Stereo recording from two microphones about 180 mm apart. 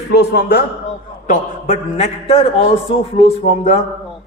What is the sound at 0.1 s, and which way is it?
Speech, 65° left (ahead or behind).